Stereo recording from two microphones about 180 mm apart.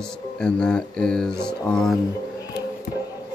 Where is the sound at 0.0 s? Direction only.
5° left (ahead or behind).